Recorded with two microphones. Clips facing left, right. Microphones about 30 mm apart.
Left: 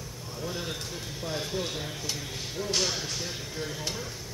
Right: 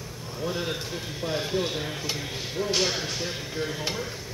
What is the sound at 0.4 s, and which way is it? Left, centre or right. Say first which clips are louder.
Speech: right 5 dB; centre.